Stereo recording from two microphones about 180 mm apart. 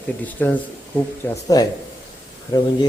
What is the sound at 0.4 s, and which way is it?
Speech, 10° left (ahead or behind).